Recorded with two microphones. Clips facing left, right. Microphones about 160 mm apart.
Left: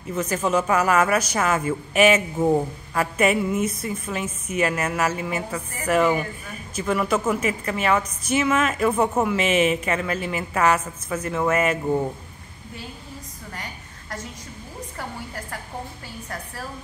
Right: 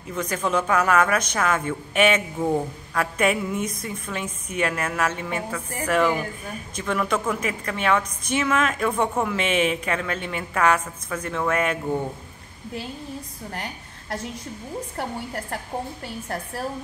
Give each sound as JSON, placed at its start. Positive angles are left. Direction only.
{"t": 0.1, "sound": "a man's voice", "side_deg": 5}